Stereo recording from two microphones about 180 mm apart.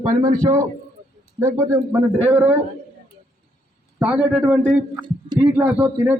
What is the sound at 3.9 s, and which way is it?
A man's voice, 5° right (ahead or behind).